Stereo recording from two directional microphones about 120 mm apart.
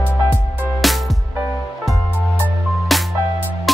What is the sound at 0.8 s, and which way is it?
Music, centre (ahead or behind).